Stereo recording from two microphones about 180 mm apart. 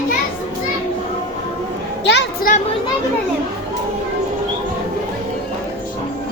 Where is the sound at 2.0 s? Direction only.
70° left (ahead or behind).